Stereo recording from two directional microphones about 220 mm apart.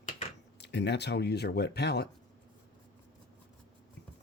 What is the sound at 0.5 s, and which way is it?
Speech, 50° left (ahead or behind).